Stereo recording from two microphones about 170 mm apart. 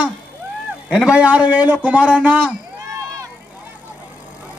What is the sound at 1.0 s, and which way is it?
A man's voice, 5° right (ahead or behind).